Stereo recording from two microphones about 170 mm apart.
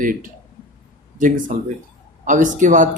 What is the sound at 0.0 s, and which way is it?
Speech, 55° right (ahead or behind).